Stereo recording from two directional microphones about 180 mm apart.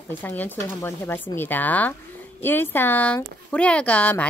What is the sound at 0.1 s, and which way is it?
Speech, 10° left (ahead or behind).